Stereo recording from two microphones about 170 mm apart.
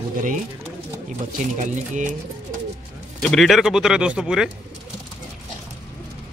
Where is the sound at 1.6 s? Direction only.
45° right (ahead or behind).